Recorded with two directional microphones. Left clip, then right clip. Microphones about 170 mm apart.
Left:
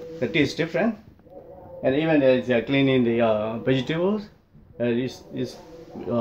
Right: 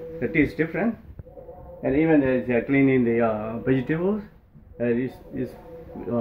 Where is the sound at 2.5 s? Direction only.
15° left (ahead or behind).